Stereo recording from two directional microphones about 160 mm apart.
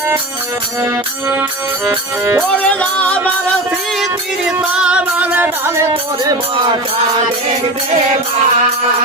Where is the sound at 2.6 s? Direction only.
10° left (ahead or behind).